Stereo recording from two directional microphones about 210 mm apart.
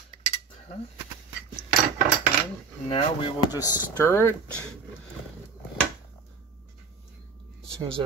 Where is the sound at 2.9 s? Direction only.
25° left (ahead or behind).